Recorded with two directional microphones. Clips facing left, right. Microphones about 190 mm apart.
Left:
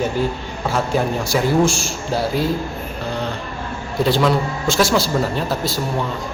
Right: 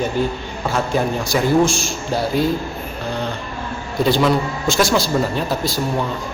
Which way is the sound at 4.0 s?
Centre (ahead or behind).